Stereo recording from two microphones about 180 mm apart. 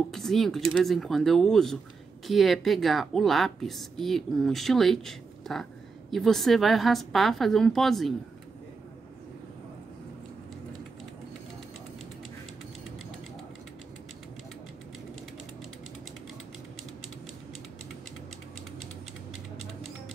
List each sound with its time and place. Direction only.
0.1 s a woman's voice: centre (ahead or behind)